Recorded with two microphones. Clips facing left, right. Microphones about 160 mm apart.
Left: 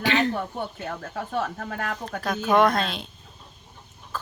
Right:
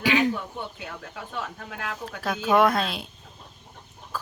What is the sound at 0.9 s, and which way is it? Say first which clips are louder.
Speech: left 6 dB; 45° left (ahead or behind).